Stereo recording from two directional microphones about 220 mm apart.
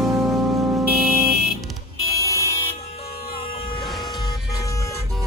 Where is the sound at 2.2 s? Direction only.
15° left (ahead or behind).